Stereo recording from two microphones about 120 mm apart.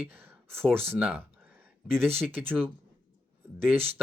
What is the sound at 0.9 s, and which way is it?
Speech, 15° right (ahead or behind).